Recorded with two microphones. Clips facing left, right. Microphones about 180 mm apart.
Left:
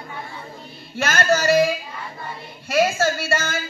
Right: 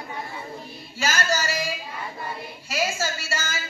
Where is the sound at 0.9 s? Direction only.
60° left (ahead or behind).